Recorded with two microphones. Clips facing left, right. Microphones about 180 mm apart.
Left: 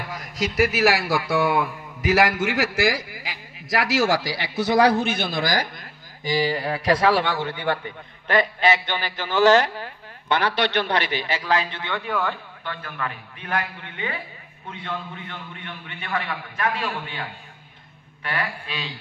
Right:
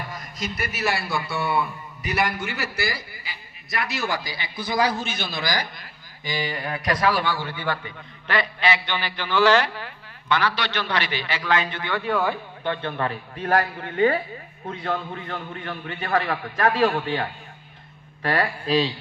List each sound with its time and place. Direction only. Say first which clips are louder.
0.1 s a man's voice: left 5 dB; 90° left; by 5.7 s 50° left (ahead or behind)
6.2 s a man's voice: left 6 dB; 35° left (ahead or behind); by 7.6 s 20° left (ahead or behind)
8.3 s a man's voice: left 4 dB; 45° left (ahead or behind)
12.6 s a man's voice: right 6 dB; 30° right (ahead or behind)